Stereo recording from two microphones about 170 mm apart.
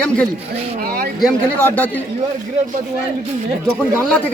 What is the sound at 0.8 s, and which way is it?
Speech, 65° right (ahead or behind).